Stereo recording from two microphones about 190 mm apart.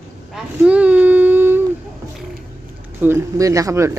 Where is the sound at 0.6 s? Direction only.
5° right (ahead or behind).